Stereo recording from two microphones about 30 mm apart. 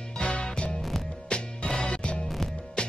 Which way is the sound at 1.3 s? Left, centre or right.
Left.